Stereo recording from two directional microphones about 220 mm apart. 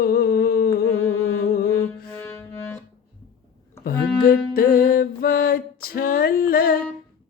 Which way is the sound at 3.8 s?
45° left (ahead or behind).